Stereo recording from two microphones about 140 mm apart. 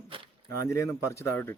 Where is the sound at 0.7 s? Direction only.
20° left (ahead or behind).